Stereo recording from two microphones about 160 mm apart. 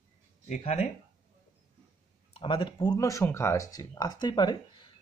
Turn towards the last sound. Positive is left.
turn(degrees=30)  # may be behind; listen again after turning